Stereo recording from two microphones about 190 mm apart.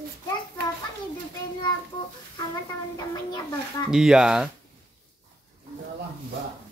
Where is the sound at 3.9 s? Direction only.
5° right (ahead or behind).